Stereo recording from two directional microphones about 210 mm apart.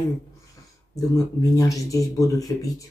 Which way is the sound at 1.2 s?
15° left (ahead or behind).